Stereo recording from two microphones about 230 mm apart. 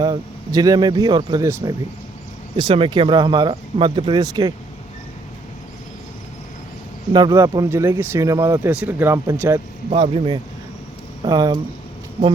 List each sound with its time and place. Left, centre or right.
0.0 s speech: centre
7.1 s speech: centre
9.9 s speech: right